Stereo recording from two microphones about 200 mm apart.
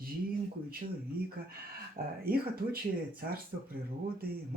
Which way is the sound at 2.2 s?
45° right (ahead or behind).